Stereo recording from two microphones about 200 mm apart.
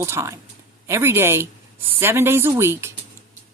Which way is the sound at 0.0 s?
15° right (ahead or behind).